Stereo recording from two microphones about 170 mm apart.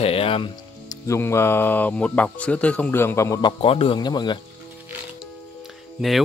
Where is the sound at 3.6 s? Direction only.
35° left (ahead or behind).